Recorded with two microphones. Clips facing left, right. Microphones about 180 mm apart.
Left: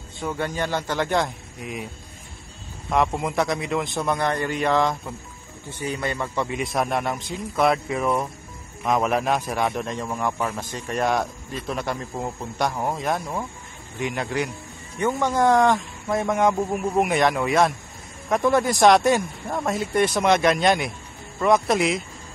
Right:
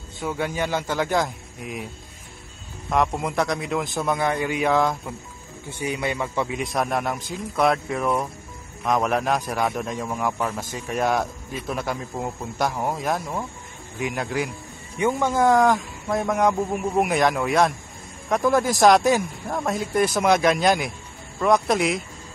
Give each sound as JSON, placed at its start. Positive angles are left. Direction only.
{"t": 0.2, "sound": "a man's voice", "side_deg": -5}
{"t": 2.9, "sound": "a man's voice", "side_deg": 0}
{"t": 15.0, "sound": "a man's voice", "side_deg": -10}